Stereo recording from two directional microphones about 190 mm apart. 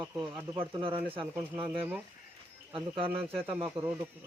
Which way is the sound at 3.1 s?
10° right (ahead or behind).